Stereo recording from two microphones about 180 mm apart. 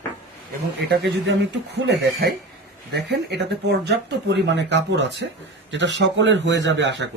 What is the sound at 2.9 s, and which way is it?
A man's voice, 70° right (ahead or behind).